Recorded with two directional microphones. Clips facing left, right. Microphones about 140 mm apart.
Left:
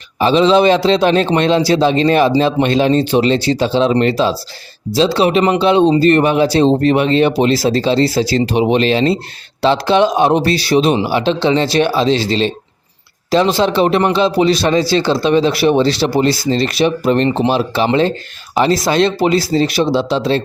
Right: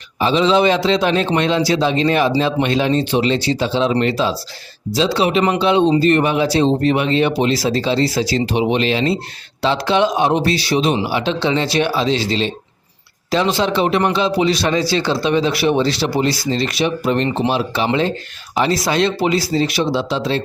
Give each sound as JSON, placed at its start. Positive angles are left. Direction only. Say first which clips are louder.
{"t": 0.2, "sound": "speech", "louder": "left 4 dB", "side_deg": 35}